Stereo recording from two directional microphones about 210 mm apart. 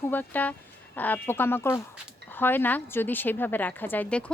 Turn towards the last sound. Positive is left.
turn(degrees=5)  # may be behind; listen again after turning